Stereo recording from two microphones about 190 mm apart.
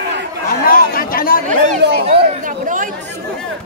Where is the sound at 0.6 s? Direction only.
50° left (ahead or behind).